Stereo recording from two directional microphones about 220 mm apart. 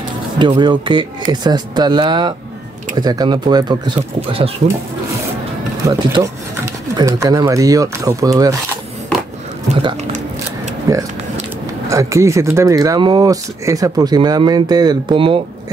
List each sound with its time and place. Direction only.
0.4 s speech: 20° right (ahead or behind)
5.9 s speech: 15° right (ahead or behind)
10.9 s speech: 15° right (ahead or behind)